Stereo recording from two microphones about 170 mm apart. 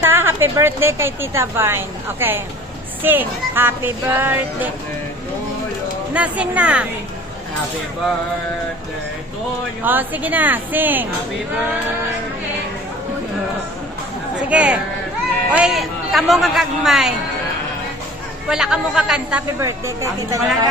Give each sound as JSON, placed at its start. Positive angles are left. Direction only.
{"t": 0.1, "sound": "a woman's voice", "side_deg": -15}
{"t": 6.1, "sound": "speech", "side_deg": -10}
{"t": 9.8, "sound": "speech", "side_deg": -10}
{"t": 14.5, "sound": "speech", "side_deg": -5}
{"t": 18.4, "sound": "speech", "side_deg": -5}
{"t": 19.6, "sound": "speech", "side_deg": -20}